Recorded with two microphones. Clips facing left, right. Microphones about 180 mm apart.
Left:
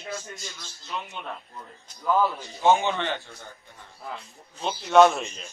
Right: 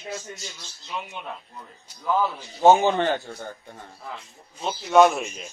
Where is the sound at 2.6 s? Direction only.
40° right (ahead or behind).